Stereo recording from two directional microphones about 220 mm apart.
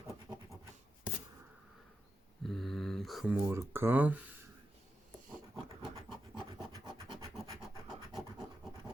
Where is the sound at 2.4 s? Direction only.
Centre (ahead or behind).